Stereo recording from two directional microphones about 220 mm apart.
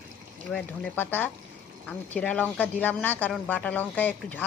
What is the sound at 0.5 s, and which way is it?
Speech, 10° left (ahead or behind).